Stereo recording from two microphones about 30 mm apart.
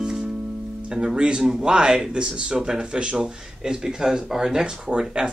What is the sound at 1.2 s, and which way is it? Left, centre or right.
Speech, right.